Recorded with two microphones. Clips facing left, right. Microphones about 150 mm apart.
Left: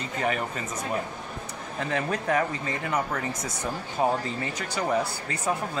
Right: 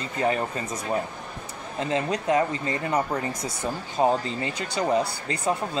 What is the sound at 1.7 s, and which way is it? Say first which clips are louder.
Speech: right 3 dB; 20° right (ahead or behind).